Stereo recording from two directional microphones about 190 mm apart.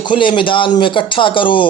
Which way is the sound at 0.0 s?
25° left (ahead or behind).